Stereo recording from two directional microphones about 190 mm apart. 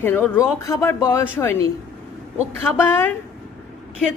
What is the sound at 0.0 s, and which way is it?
Speech, 10° left (ahead or behind).